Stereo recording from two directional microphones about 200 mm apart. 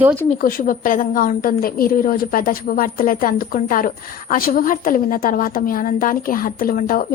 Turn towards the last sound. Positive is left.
turn(degrees=45)  # may be behind; listen again after turning